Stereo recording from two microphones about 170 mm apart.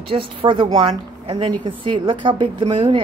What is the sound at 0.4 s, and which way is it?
A woman's voice, 30° right (ahead or behind).